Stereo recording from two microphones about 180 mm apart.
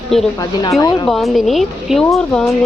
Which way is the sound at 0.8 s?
25° left (ahead or behind).